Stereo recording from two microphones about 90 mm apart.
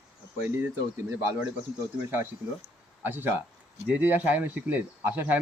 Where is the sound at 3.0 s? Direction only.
20° right (ahead or behind).